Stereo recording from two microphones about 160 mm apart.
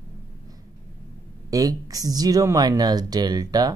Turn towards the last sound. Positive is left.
turn(degrees=-25)  # may be behind; listen again after turning